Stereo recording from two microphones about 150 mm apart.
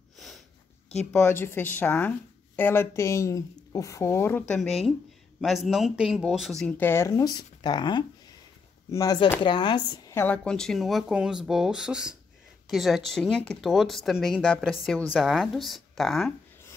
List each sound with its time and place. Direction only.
1.1 s speech: 15° left (ahead or behind)
4.6 s speech: centre (ahead or behind)
6.8 s speech: 15° left (ahead or behind)
10.1 s speech: 10° left (ahead or behind)